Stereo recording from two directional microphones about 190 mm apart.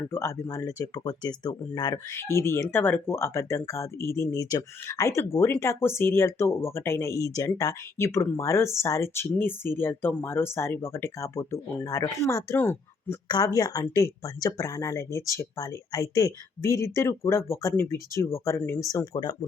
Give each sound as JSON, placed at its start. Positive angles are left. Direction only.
{"t": 0.1, "sound": "speech", "side_deg": 15}